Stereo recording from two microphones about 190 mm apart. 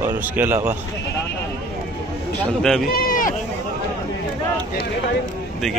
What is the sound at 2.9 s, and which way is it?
Sheep, 50° left (ahead or behind).